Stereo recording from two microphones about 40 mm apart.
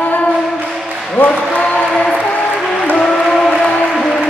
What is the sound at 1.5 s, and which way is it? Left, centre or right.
Chant, left.